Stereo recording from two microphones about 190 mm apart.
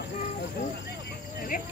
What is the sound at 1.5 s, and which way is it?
Cricket, 50° left (ahead or behind).